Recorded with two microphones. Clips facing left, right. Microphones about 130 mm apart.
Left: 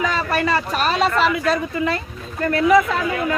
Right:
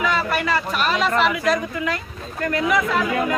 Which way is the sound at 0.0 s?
35° left (ahead or behind).